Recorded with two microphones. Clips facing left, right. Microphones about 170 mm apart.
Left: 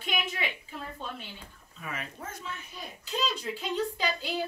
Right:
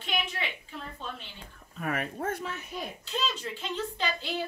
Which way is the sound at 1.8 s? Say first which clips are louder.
Right 8 dB; 55° right (ahead or behind).